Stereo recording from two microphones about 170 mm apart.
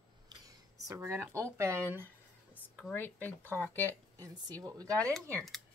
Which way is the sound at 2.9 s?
10° left (ahead or behind).